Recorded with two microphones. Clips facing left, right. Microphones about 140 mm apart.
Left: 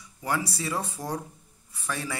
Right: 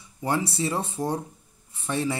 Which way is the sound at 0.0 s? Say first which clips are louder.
Right 3 dB; 25° right (ahead or behind).